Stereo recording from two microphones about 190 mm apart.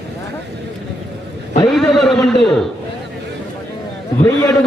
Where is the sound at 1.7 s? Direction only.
Centre (ahead or behind).